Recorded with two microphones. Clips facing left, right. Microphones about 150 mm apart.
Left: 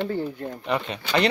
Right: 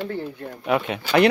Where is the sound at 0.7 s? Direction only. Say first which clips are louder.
Right 5 dB; 5° right (ahead or behind).